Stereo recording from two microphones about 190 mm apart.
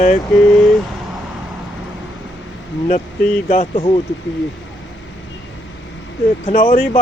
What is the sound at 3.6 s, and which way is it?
Speech, 30° left (ahead or behind).